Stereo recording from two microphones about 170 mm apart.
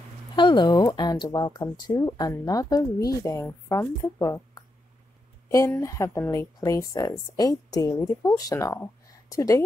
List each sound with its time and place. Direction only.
0.4 s a woman's voice: 25° left (ahead or behind)